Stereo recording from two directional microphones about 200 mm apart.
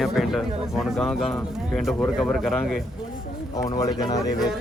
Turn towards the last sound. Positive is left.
turn(degrees=20)  # may be behind; listen again after turning